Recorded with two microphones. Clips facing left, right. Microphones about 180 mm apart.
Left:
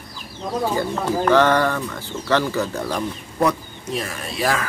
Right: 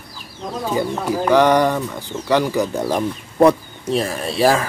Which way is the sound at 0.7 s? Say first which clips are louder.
Right 2 dB; 15° right (ahead or behind).